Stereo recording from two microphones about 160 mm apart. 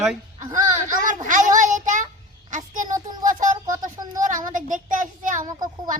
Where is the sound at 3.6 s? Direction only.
25° right (ahead or behind).